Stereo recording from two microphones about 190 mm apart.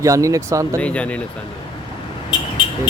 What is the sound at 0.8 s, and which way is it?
Speech, 5° left (ahead or behind).